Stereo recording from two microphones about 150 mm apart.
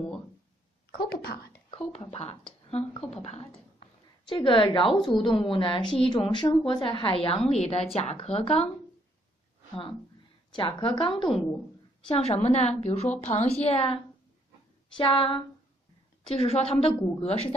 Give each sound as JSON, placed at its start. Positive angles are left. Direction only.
{"t": 0.9, "sound": "a woman's voice", "side_deg": 90}
{"t": 1.7, "sound": "a woman's voice", "side_deg": 35}
{"t": 10.5, "sound": "a woman's voice", "side_deg": 35}
{"t": 15.0, "sound": "a woman's voice", "side_deg": 35}